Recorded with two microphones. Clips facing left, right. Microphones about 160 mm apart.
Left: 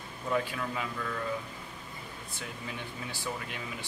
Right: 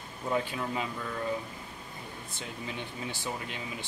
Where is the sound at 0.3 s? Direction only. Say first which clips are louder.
Right 1 dB; 25° right (ahead or behind).